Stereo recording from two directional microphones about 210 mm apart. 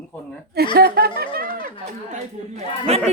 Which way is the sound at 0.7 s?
45° right (ahead or behind).